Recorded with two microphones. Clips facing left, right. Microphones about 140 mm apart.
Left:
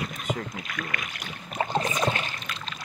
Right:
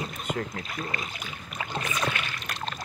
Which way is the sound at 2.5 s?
65° right (ahead or behind).